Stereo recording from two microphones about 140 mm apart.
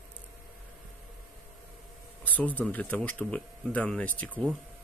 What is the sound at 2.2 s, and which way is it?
Speech, 10° left (ahead or behind).